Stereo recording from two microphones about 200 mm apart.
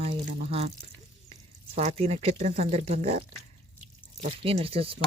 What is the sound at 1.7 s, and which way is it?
Speech, 30° right (ahead or behind).